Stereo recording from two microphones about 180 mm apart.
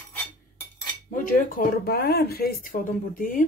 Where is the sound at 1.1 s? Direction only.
50° left (ahead or behind).